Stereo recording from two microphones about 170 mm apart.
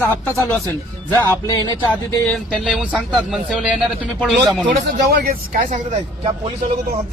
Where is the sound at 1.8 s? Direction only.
15° left (ahead or behind).